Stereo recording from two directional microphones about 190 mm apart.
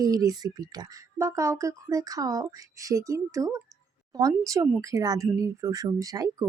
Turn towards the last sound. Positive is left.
turn(degrees=-20)  # may be behind; listen again after turning